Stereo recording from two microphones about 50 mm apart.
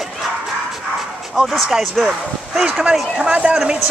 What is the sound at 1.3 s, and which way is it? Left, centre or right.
Speech, centre.